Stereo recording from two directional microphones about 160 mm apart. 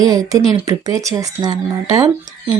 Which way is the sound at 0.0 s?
25° right (ahead or behind).